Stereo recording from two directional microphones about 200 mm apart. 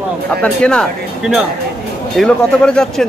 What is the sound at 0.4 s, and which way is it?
Speech, 5° left (ahead or behind).